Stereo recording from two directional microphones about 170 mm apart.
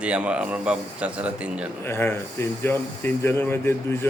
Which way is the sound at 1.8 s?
15° left (ahead or behind).